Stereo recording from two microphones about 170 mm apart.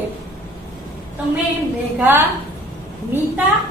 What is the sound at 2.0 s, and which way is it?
Speech, 10° right (ahead or behind).